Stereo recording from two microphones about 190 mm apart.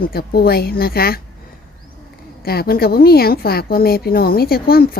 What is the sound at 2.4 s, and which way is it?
A woman's voice, 55° left (ahead or behind).